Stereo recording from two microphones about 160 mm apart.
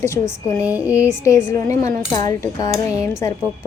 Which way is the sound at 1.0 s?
20° left (ahead or behind).